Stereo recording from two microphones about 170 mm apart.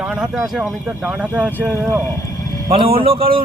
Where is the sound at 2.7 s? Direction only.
35° right (ahead or behind).